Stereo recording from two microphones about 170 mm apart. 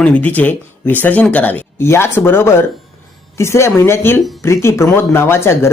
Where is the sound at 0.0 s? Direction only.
10° left (ahead or behind).